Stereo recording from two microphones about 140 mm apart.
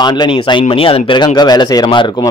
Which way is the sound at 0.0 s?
35° left (ahead or behind).